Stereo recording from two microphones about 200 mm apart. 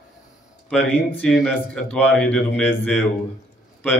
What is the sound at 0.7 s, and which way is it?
Speech, 5° left (ahead or behind).